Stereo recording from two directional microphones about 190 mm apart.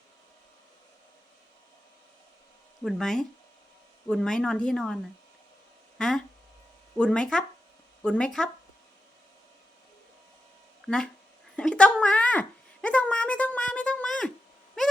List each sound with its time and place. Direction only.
2.8 s speech: centre (ahead or behind)
6.0 s speech: 5° left (ahead or behind)
10.8 s speech: 5° left (ahead or behind)